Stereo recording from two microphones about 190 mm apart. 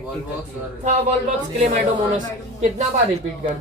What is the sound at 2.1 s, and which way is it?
Speech, 40° right (ahead or behind).